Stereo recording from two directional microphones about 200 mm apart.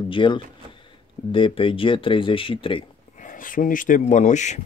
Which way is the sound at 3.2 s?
40° left (ahead or behind).